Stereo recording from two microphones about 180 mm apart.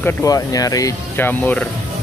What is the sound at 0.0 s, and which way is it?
Speech, 20° left (ahead or behind).